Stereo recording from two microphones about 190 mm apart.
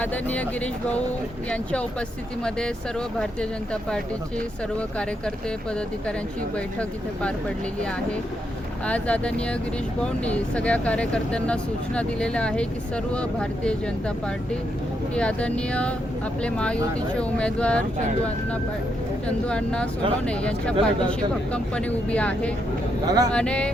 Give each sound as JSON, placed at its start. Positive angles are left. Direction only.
{"t": 0.0, "sound": "speech", "side_deg": 10}
{"t": 6.7, "sound": "speech", "side_deg": 5}
{"t": 8.9, "sound": "speech", "side_deg": 5}
{"t": 15.1, "sound": "speech", "side_deg": 5}
{"t": 19.5, "sound": "speech", "side_deg": 5}
{"t": 23.0, "sound": "speech", "side_deg": -20}
{"t": 23.3, "sound": "speech", "side_deg": 5}